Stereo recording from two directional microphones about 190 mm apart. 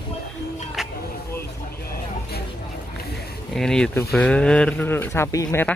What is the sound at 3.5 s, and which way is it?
Speech, 5° left (ahead or behind).